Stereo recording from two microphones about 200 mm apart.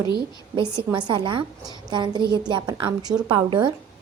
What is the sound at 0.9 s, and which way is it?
A woman's voice, 25° right (ahead or behind).